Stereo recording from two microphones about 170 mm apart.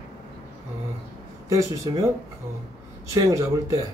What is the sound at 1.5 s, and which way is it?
Speech, 20° right (ahead or behind).